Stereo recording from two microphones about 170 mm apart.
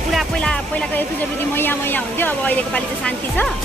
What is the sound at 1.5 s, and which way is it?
Speech, 10° left (ahead or behind).